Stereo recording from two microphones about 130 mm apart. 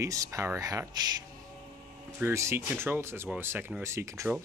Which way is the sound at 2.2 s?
20° right (ahead or behind).